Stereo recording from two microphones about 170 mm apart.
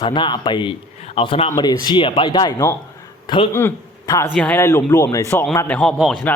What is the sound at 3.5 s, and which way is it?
Speech, 15° left (ahead or behind).